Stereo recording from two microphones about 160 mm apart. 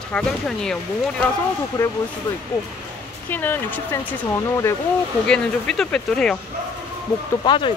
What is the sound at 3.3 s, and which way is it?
Speech, 15° left (ahead or behind).